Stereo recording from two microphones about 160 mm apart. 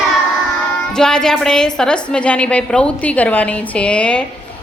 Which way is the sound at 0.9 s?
5° left (ahead or behind).